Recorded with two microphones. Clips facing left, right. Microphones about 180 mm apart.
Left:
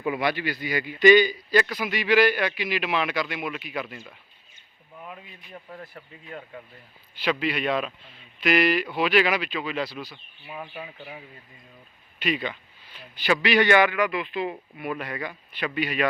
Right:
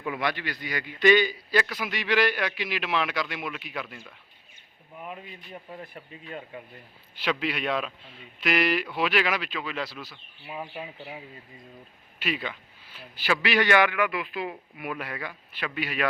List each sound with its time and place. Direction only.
0.0 s a man's voice: 5° left (ahead or behind)
5.7 s speech: 15° right (ahead or behind)
7.2 s a man's voice: centre (ahead or behind)
10.4 s speech: 15° right (ahead or behind)
12.2 s a man's voice: 5° right (ahead or behind)